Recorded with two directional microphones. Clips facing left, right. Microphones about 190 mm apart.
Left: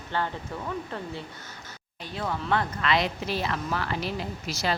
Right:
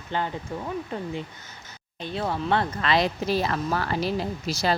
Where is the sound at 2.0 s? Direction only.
30° right (ahead or behind).